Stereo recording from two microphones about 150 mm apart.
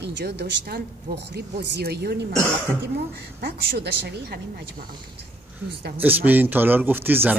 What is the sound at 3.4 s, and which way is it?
Speech, 90° right.